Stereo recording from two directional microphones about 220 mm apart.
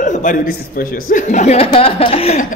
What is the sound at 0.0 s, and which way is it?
A man's voice, 35° left (ahead or behind).